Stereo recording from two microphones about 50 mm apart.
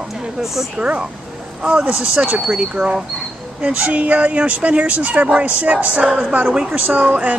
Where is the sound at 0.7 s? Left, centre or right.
Right.